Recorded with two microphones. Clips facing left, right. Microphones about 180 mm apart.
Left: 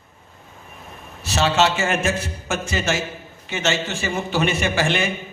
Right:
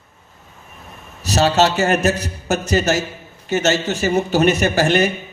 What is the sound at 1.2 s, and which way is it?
A man's voice, 40° right (ahead or behind).